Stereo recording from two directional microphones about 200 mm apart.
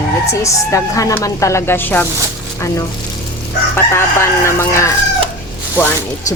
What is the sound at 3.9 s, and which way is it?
Speech, 15° left (ahead or behind).